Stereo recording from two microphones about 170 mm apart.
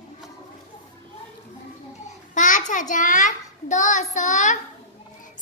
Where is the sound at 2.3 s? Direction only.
50° left (ahead or behind).